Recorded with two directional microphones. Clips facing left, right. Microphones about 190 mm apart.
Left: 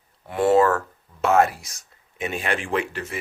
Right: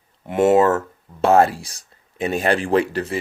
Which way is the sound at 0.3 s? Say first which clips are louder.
Right 3 dB; 20° right (ahead or behind).